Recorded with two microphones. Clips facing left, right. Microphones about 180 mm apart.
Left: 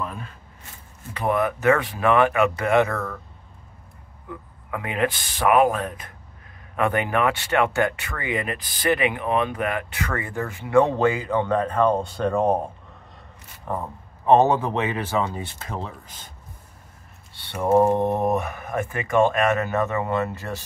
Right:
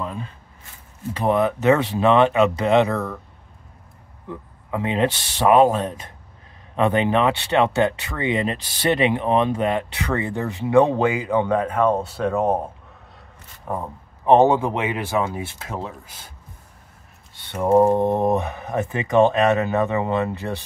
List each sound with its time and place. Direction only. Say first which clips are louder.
0.0 s a sound: right 2 dB; 20° right (ahead or behind)
1.2 s speech: right 2 dB; 20° right (ahead or behind)
4.3 s speech: right 4 dB; 25° right (ahead or behind); by 12.6 s 5° right (ahead or behind)
13.7 s speech: right 1 dB; 10° right (ahead or behind)
17.7 s speech: right 2 dB; 15° right (ahead or behind)